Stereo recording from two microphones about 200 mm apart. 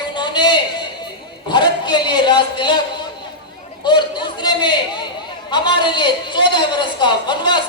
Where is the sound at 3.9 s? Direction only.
20° left (ahead or behind).